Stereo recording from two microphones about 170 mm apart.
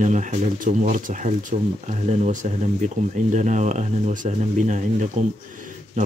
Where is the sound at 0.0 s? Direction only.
45° right (ahead or behind).